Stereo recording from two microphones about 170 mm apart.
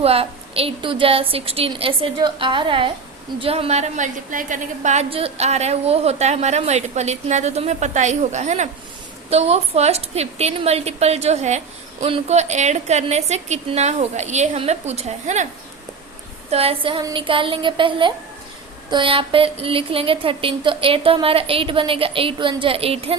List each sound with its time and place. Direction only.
0.0 s a woman's voice: 35° right (ahead or behind)
16.5 s a woman's voice: 35° right (ahead or behind)